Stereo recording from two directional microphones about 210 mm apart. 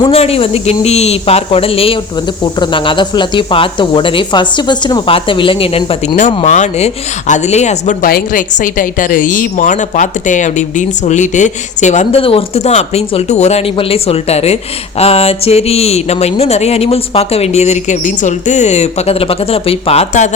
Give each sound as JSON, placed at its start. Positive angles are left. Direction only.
{"t": 0.0, "sound": "speech", "side_deg": 30}